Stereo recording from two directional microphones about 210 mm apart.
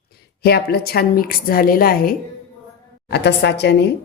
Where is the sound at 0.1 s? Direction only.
50° left (ahead or behind).